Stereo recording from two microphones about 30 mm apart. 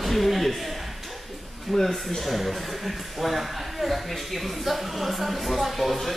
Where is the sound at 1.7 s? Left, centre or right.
Centre.